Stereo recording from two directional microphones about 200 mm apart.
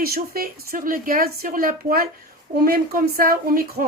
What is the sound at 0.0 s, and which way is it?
A woman's voice, 50° right (ahead or behind).